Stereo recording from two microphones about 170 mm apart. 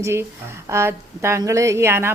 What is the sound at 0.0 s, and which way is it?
A woman's voice, 15° right (ahead or behind).